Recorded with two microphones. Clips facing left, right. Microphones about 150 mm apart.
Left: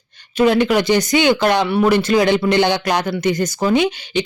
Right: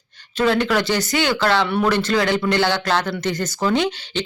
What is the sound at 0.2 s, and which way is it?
Speech, 15° left (ahead or behind).